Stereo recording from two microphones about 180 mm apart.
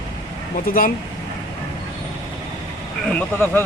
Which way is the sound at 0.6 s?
50° left (ahead or behind).